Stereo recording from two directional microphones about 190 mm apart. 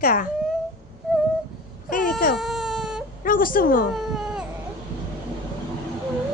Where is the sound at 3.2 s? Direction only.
45° left (ahead or behind).